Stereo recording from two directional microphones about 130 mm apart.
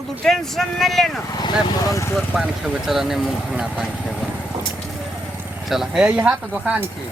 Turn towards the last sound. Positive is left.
turn(degrees=-10)  # may be behind; listen again after turning